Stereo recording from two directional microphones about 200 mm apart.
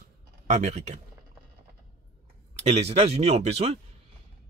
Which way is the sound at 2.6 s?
30° right (ahead or behind).